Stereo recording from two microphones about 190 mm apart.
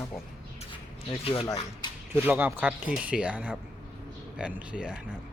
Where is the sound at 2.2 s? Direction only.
10° right (ahead or behind).